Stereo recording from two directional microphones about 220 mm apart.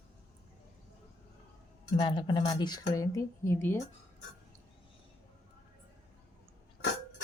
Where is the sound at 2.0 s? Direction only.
20° left (ahead or behind).